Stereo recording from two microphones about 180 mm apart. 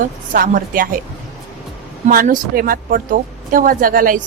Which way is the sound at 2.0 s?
50° right (ahead or behind).